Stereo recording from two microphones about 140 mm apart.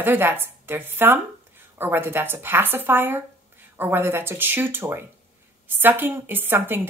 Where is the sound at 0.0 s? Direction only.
15° right (ahead or behind).